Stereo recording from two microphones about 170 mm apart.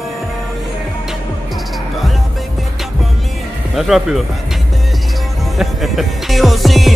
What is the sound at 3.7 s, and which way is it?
Speech, centre (ahead or behind).